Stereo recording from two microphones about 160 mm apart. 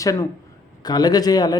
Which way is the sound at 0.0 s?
20° left (ahead or behind).